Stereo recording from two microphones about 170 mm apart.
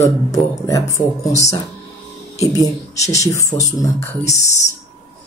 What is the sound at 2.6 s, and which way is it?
Speech, 20° left (ahead or behind).